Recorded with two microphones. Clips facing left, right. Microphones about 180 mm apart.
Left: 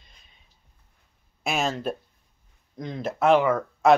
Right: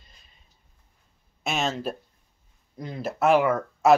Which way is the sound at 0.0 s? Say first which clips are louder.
Even; centre (ahead or behind).